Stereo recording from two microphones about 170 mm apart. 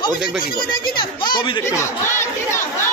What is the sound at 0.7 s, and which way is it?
Speech, 30° left (ahead or behind).